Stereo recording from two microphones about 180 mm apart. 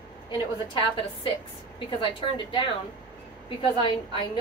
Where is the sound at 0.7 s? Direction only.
30° left (ahead or behind).